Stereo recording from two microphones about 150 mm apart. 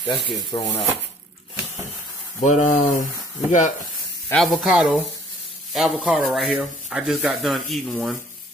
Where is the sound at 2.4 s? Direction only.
55° left (ahead or behind).